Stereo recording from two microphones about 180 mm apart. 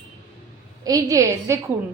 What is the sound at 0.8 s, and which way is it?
Speech, 20° right (ahead or behind).